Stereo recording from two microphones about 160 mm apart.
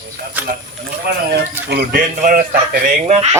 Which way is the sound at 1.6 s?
70° right (ahead or behind).